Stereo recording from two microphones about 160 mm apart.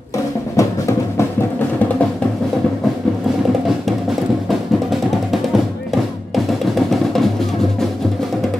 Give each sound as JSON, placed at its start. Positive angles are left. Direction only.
{"t": 0.6, "sound": "music", "side_deg": 20}
{"t": 6.3, "sound": "drum", "side_deg": 0}